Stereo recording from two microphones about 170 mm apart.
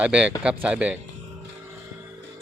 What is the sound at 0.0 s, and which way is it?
Speech, 5° right (ahead or behind).